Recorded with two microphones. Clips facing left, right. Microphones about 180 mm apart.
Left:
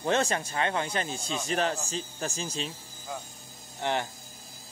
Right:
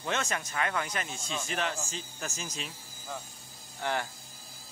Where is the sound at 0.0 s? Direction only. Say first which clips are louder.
Left 6 dB; 35° left (ahead or behind).